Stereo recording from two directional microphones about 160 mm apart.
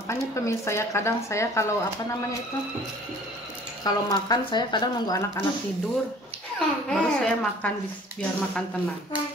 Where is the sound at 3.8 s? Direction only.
25° left (ahead or behind).